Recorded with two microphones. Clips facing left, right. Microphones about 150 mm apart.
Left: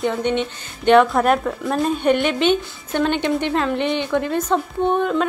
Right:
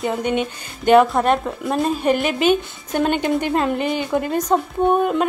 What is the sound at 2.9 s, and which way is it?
Speech, 45° right (ahead or behind).